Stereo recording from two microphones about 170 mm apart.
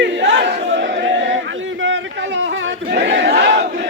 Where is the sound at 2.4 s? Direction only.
80° right.